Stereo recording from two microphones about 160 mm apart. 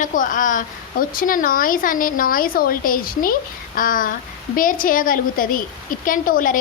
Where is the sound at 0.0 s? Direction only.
55° left (ahead or behind).